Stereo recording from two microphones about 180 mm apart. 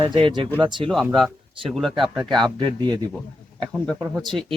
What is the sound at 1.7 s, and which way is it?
Speech, centre (ahead or behind).